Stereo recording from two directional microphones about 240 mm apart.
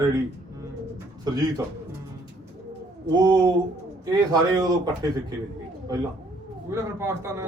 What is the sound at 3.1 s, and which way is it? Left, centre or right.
A man's voice, centre.